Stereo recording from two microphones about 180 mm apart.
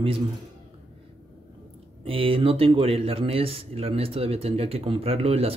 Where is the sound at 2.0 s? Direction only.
30° right (ahead or behind).